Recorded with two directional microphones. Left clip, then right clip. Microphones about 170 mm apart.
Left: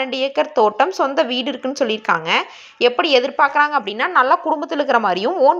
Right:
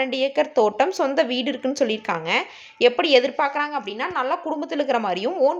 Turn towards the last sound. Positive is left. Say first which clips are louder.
# left 6 dB
turn(degrees=10)  # may be behind; listen again after turning